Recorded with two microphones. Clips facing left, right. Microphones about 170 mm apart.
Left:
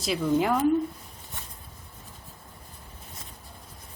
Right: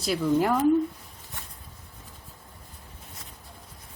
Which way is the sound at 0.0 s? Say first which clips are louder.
Right 1 dB; centre (ahead or behind).